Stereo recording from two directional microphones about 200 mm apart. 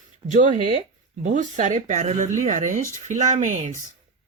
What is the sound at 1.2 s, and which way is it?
Speech, 40° right (ahead or behind).